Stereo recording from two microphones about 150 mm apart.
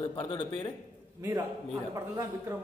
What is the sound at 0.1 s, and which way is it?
Mantra, 30° left (ahead or behind).